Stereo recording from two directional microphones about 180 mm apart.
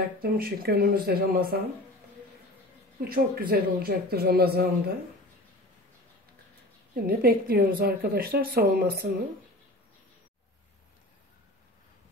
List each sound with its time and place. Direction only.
0.2 s speech: 55° right (ahead or behind)
3.0 s speech: 55° right (ahead or behind)
7.1 s speech: 55° right (ahead or behind)